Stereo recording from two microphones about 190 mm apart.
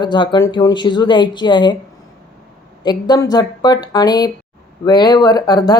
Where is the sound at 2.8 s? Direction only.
20° left (ahead or behind).